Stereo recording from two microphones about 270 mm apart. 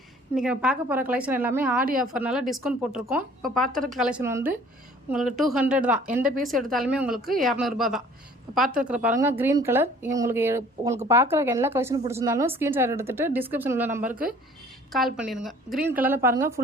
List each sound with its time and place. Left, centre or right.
0.3 s a woman's voice: centre
1.8 s a woman's voice: right
2.1 s a woman's voice: centre